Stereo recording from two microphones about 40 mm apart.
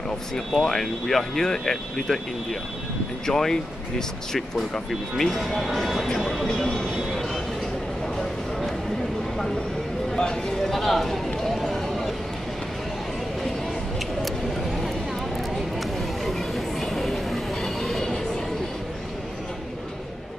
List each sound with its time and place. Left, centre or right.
0.5 s speech: centre
3.3 s speech: centre
5.1 s speech: centre
6.2 s a sound: centre
8.2 s a sound: centre
10.1 s speech: centre
10.6 s speech: centre
11.4 s run: centre
15.3 s a sound: centre
16.5 s train: centre